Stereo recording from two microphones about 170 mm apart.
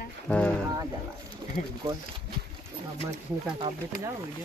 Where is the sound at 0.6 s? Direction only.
20° right (ahead or behind).